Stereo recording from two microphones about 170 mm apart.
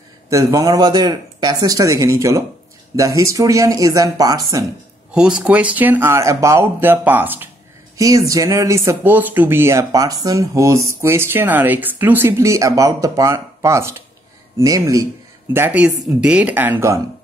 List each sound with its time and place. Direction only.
0.3 s speech: 20° right (ahead or behind)
5.1 s speech: 5° right (ahead or behind)